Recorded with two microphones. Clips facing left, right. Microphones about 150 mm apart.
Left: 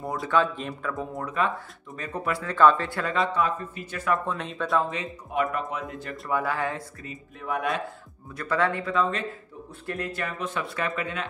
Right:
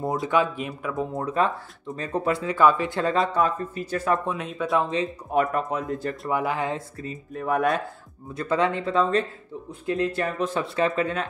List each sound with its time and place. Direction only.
0.0 s speech: 25° right (ahead or behind)
0.4 s speech: 10° right (ahead or behind)
0.9 s speech: 20° right (ahead or behind)
2.4 s speech: 10° right (ahead or behind)
2.9 s speech: 25° right (ahead or behind)
3.3 s speech: 40° right (ahead or behind)
4.3 s speech: 5° right (ahead or behind)
4.7 s speech: 20° right (ahead or behind)
5.3 s speech: 40° right (ahead or behind)
6.3 s speech: 20° right (ahead or behind)
7.1 s speech: 45° right (ahead or behind)
8.4 s speech: 20° right (ahead or behind)
9.7 s speech: 20° right (ahead or behind); by 11.2 s 35° right (ahead or behind)